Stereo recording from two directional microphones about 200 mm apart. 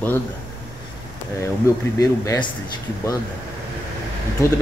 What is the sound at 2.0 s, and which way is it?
Speech, 15° left (ahead or behind).